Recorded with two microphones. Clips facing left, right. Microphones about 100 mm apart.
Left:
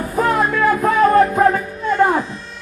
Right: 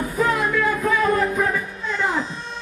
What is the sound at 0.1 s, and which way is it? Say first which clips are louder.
Music: left 5 dB; 50° left (ahead or behind).